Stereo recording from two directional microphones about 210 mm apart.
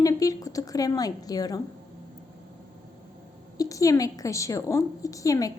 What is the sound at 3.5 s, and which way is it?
A woman's voice, 15° left (ahead or behind).